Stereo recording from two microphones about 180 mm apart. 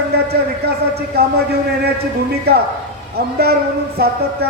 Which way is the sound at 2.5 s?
60° right (ahead or behind).